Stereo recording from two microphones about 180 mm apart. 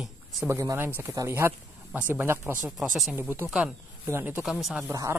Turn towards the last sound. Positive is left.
turn(degrees=-20)  # may be behind; listen again after turning